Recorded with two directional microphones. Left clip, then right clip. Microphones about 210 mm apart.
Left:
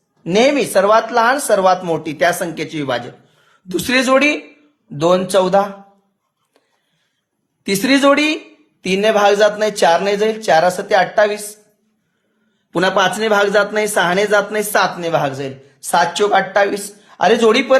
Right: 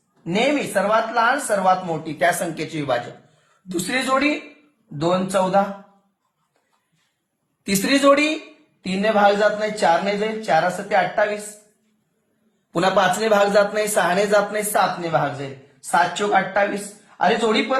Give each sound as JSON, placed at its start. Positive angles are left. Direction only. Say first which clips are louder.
{"t": 0.3, "sound": "speech", "louder": "left 7 dB", "side_deg": 55}
{"t": 3.7, "sound": "speech", "louder": "left 7 dB", "side_deg": 50}
{"t": 7.6, "sound": "a man's voice", "louder": "left 4 dB", "side_deg": 35}
{"t": 8.8, "sound": "speech", "louder": "left 4 dB", "side_deg": 50}
{"t": 12.7, "sound": "a man's voice", "louder": "left 3 dB", "side_deg": 35}
{"t": 14.7, "sound": "speech", "louder": "left 4 dB", "side_deg": 55}